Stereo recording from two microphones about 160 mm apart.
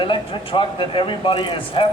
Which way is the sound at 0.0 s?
30° left (ahead or behind).